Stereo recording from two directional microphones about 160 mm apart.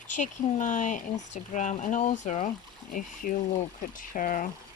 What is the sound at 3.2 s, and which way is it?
Speech, 60° left (ahead or behind).